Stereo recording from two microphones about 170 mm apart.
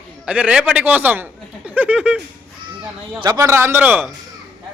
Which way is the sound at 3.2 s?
20° right (ahead or behind).